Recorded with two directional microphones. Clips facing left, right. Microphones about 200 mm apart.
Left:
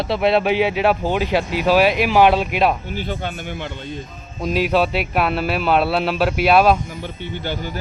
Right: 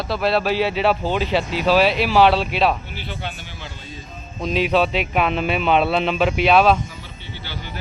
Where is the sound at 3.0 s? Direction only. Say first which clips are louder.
Left 6 dB; 45° left (ahead or behind).